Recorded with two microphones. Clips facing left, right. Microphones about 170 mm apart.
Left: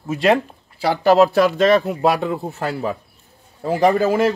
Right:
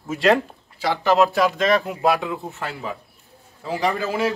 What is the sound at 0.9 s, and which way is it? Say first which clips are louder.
Speech: left 4 dB; 35° left (ahead or behind).